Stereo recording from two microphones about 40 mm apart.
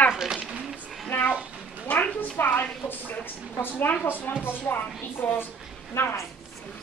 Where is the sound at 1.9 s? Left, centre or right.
Left.